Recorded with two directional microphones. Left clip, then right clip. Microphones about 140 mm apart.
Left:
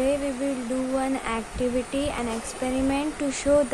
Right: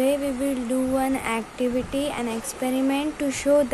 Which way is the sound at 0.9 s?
20° right (ahead or behind).